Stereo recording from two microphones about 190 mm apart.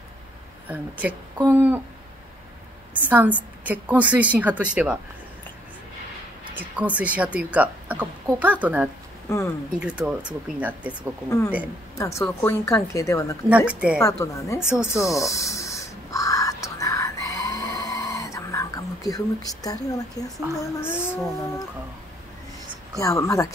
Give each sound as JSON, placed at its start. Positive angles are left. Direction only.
{"t": 0.7, "sound": "speech", "side_deg": -10}
{"t": 2.9, "sound": "speech", "side_deg": -10}
{"t": 6.5, "sound": "speech", "side_deg": -5}
{"t": 12.0, "sound": "a woman's voice", "side_deg": 15}
{"t": 13.5, "sound": "speech", "side_deg": -5}
{"t": 14.0, "sound": "a woman's voice", "side_deg": 15}
{"t": 14.6, "sound": "speech", "side_deg": -5}
{"t": 15.1, "sound": "a sound", "side_deg": 15}
{"t": 20.5, "sound": "a woman's voice", "side_deg": 15}
{"t": 22.9, "sound": "a woman's voice", "side_deg": 15}